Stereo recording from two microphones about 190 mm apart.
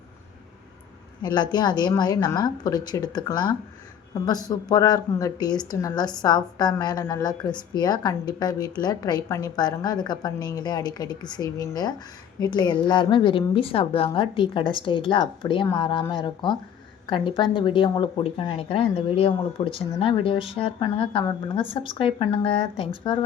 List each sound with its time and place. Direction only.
1.2 s a woman's voice: 25° left (ahead or behind)